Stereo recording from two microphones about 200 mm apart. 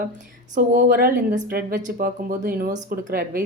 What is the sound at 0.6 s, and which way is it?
Speech, 45° right (ahead or behind).